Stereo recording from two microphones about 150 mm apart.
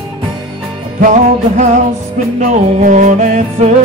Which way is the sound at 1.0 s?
55° right (ahead or behind).